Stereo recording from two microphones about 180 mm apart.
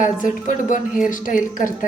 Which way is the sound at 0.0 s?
45° left (ahead or behind).